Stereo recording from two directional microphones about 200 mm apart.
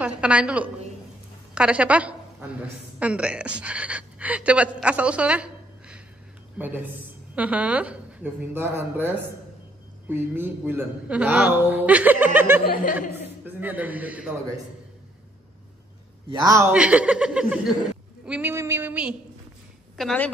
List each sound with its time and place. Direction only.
0.0 s a woman's voice: 5° right (ahead or behind)
16.3 s a man's voice: 20° right (ahead or behind)
16.7 s speech: 5° right (ahead or behind)